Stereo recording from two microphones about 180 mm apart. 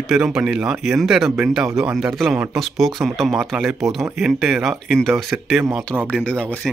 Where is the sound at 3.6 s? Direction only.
20° right (ahead or behind).